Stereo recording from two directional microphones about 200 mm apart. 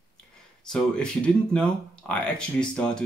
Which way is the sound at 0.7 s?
5° left (ahead or behind).